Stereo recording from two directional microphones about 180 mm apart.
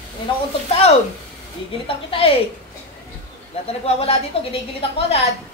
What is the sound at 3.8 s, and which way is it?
Speech, 35° left (ahead or behind).